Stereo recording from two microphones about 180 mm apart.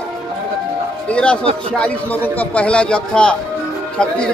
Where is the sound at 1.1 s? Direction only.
5° left (ahead or behind).